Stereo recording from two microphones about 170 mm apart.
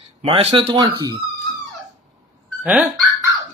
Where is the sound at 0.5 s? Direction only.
30° right (ahead or behind).